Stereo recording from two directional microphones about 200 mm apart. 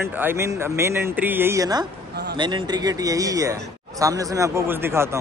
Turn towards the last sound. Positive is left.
turn(degrees=-10)  # may be behind; listen again after turning